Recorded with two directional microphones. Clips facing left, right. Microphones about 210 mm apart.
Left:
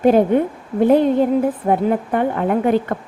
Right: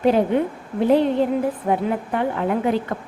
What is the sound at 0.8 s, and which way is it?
A woman's voice, 50° left (ahead or behind).